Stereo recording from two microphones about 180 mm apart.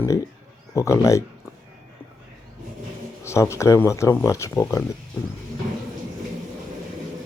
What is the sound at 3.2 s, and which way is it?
Speech, 15° left (ahead or behind).